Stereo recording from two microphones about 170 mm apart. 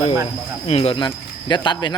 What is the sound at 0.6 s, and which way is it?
Speech, 35° left (ahead or behind).